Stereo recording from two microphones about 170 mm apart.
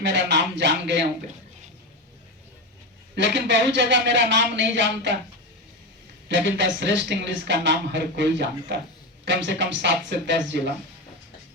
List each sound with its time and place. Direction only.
0.0 s speech: 90° right
3.2 s speech: 90° right
6.2 s speech: 90° right